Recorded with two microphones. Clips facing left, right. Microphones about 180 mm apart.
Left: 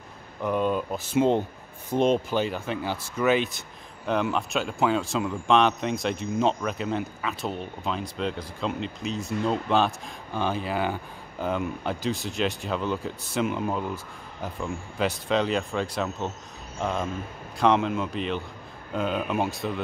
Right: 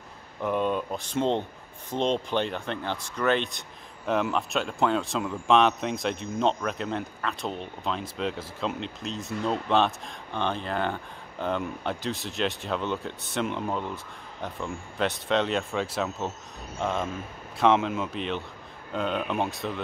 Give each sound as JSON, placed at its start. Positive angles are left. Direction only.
{"t": 0.4, "sound": "speech", "side_deg": 0}